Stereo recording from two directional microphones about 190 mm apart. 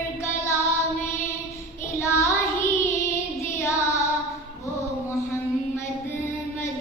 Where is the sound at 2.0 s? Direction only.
15° left (ahead or behind).